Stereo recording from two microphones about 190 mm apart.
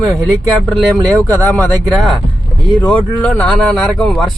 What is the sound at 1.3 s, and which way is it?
Speech, 10° left (ahead or behind).